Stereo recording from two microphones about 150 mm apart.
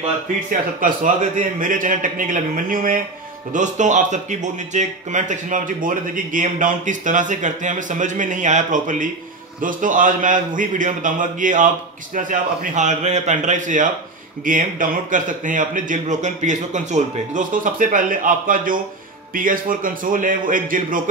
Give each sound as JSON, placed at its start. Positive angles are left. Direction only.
{"t": 0.5, "sound": "speech", "side_deg": -60}
{"t": 3.5, "sound": "speech", "side_deg": -55}